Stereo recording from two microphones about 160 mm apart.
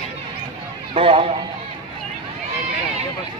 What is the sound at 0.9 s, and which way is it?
Speech, 35° right (ahead or behind).